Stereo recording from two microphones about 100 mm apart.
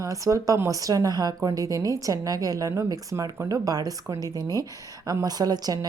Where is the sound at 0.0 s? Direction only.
35° right (ahead or behind).